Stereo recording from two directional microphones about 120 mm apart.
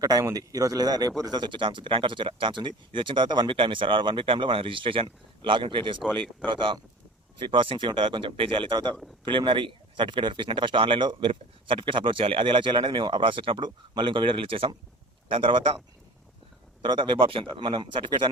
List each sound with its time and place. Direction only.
0.0 s a man's voice: 30° right (ahead or behind)
6.0 s speech: 5° left (ahead or behind)
6.5 s a man's voice: 40° right (ahead or behind)
16.8 s speech: 45° right (ahead or behind)